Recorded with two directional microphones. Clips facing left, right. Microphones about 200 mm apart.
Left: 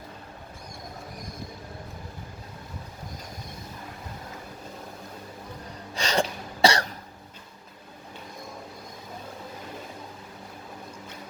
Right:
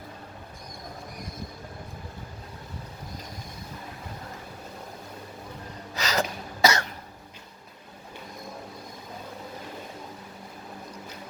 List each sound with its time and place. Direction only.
5.9 s cough: 30° left (ahead or behind)